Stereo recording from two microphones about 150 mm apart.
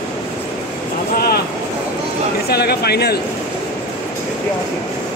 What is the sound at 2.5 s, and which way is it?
Speech, 90° left.